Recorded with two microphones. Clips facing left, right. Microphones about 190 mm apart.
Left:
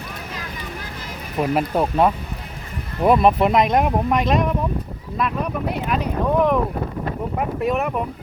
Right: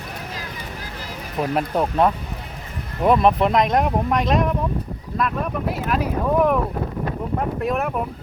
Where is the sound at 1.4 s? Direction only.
5° left (ahead or behind).